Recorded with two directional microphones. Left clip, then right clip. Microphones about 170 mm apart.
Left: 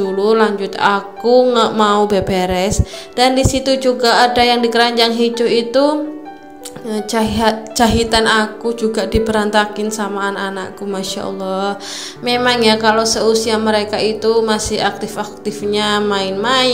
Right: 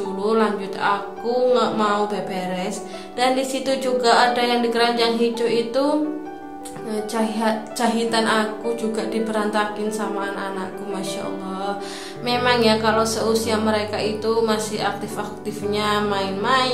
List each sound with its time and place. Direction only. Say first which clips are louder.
0.2 s speech: left 6 dB; 30° left (ahead or behind)